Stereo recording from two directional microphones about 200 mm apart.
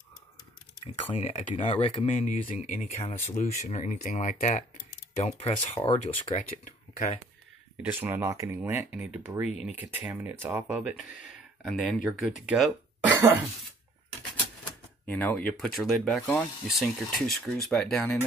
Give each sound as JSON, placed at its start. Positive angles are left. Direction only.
{"t": 1.1, "sound": "speech", "side_deg": 30}
{"t": 7.7, "sound": "speech", "side_deg": -10}
{"t": 15.0, "sound": "speech", "side_deg": 10}